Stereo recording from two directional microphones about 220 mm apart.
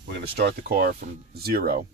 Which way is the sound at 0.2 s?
50° right (ahead or behind).